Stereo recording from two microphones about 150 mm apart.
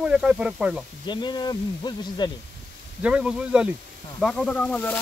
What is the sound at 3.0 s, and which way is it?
Speech, 5° right (ahead or behind).